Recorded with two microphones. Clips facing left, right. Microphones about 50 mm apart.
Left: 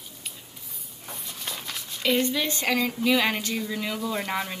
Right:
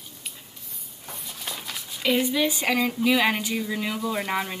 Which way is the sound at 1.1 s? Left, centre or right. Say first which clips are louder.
Even; centre.